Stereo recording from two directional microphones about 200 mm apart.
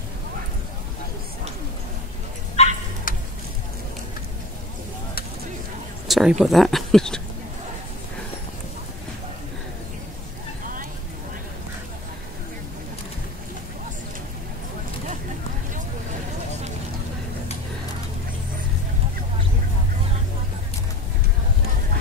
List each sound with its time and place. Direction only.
2.5 s dog: 35° left (ahead or behind)
6.0 s a sound: centre (ahead or behind)
6.4 s speech: centre (ahead or behind)